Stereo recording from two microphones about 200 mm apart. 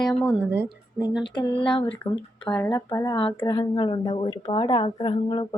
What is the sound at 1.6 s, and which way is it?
Speech, 25° left (ahead or behind).